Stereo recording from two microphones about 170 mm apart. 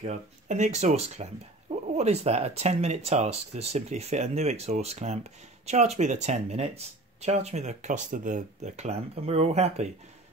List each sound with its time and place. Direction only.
0.0 s speech: 45° right (ahead or behind)